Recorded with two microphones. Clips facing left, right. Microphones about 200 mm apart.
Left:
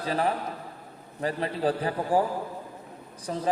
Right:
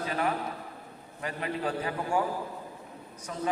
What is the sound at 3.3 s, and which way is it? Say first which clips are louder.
Speech: left 6 dB; 35° left (ahead or behind).